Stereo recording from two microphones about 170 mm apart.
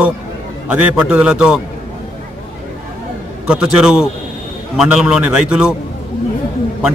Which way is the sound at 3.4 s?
5° right (ahead or behind).